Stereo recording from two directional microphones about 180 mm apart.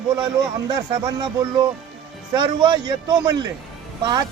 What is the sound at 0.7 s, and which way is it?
Speech, 25° right (ahead or behind).